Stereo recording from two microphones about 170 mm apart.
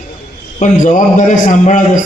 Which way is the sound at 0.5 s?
45° left (ahead or behind).